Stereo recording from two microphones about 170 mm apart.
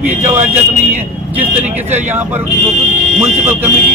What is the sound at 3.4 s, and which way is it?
Speech, 10° right (ahead or behind).